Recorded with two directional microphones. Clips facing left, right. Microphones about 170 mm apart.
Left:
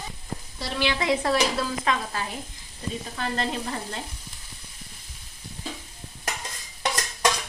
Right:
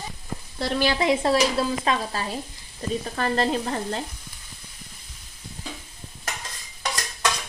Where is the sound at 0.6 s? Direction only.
40° right (ahead or behind).